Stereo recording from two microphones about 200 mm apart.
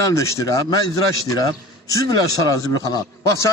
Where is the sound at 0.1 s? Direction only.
15° left (ahead or behind).